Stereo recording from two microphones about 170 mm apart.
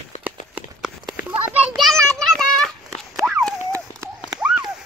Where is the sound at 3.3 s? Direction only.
Centre (ahead or behind).